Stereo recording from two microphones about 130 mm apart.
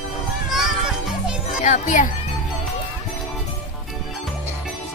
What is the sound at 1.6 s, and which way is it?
Speech, 70° left (ahead or behind).